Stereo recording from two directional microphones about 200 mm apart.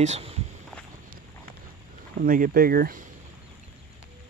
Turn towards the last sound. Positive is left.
turn(degrees=-45)  # may be behind; listen again after turning